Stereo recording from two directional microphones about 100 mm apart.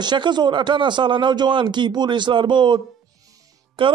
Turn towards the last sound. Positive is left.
turn(degrees=-60)  # may be behind; listen again after turning